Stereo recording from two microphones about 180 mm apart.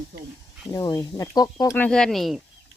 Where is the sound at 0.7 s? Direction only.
20° left (ahead or behind).